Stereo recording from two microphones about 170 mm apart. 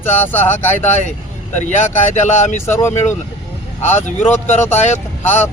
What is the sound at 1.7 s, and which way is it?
Speech, 45° left (ahead or behind).